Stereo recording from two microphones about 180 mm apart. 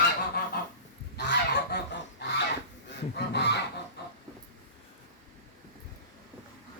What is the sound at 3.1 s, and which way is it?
Honk, 70° left (ahead or behind).